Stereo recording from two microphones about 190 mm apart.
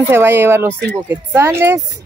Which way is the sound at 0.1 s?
10° right (ahead or behind).